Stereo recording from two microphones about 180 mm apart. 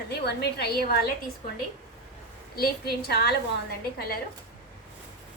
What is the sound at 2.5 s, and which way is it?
Speech, 60° left (ahead or behind).